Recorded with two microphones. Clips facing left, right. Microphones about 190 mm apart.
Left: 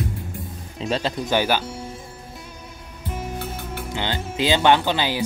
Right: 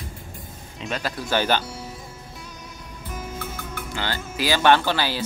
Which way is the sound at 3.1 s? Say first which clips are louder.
Left 3 dB; 30° left (ahead or behind).